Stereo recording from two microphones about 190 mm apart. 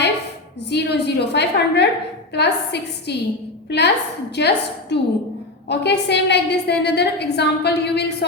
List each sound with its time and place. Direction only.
0.7 s a woman's voice: 60° left (ahead or behind)